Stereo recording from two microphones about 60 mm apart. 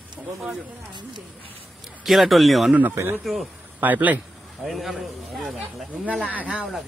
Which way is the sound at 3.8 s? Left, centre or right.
Right.